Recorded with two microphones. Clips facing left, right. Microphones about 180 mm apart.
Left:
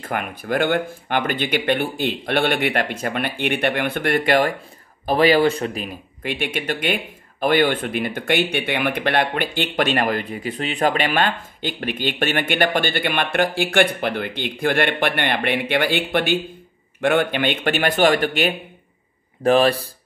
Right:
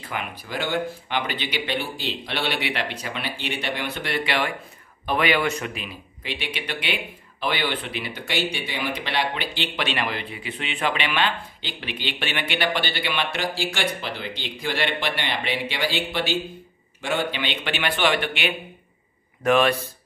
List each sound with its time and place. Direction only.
0.0 s speech: 50° left (ahead or behind); by 5.9 s 30° left (ahead or behind)
5.9 s speech: 50° left (ahead or behind); by 19.9 s 35° left (ahead or behind)